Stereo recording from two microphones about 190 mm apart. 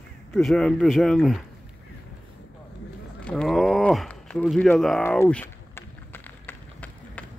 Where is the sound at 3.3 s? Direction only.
5° left (ahead or behind).